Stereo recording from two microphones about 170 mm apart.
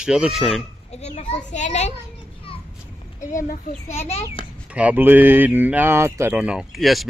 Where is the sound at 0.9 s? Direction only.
40° left (ahead or behind).